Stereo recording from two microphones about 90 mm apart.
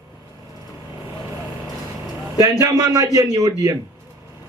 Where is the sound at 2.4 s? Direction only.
35° right (ahead or behind).